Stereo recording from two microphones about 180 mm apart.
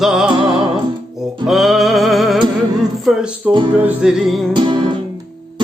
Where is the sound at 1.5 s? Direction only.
Centre (ahead or behind).